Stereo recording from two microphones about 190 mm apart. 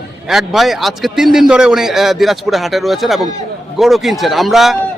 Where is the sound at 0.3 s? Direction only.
Centre (ahead or behind).